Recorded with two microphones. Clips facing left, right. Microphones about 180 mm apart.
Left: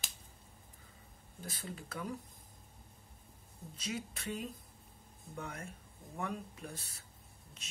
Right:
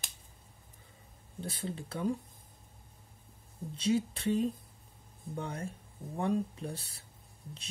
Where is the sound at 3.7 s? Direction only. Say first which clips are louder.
Right 12 dB; 30° right (ahead or behind).